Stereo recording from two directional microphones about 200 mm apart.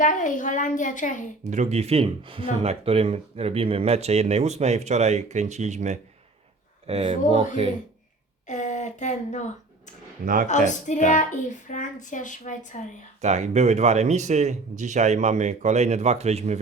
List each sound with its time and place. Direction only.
0.0 s speech: 40° left (ahead or behind)
1.5 s speech: 35° right (ahead or behind)
8.4 s speech: 35° left (ahead or behind)
13.2 s speech: 35° right (ahead or behind)